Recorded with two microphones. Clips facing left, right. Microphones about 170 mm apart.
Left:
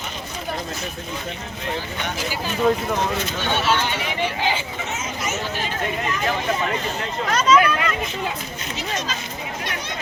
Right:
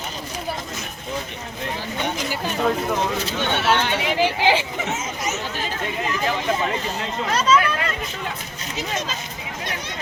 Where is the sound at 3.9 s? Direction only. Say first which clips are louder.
Right 4 dB; 85° right.